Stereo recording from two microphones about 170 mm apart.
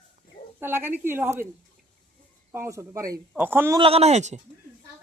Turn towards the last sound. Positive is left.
turn(degrees=-40)  # may be behind; listen again after turning